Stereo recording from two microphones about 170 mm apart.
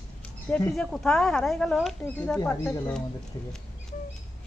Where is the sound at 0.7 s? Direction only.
Centre (ahead or behind).